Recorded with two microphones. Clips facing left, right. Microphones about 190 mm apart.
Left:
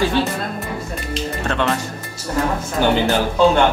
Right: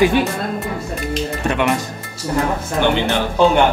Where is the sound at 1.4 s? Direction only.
15° right (ahead or behind).